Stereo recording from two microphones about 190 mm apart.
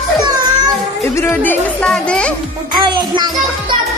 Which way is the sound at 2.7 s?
25° right (ahead or behind).